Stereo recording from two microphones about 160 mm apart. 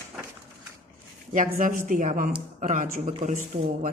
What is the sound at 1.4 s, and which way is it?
Speech, 55° right (ahead or behind).